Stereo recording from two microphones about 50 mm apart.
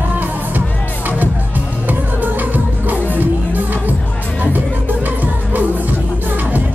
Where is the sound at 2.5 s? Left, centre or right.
Right.